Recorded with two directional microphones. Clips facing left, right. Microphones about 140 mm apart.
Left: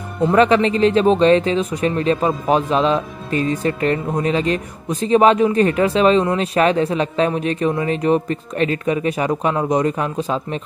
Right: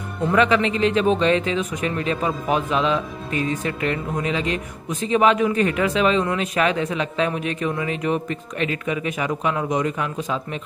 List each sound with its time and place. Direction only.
0.3 s speech: 35° left (ahead or behind)